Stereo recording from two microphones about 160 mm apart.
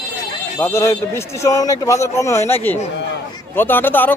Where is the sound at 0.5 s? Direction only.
15° left (ahead or behind).